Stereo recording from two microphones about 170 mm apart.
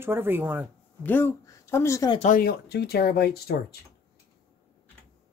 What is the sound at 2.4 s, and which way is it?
Speech, 70° left (ahead or behind).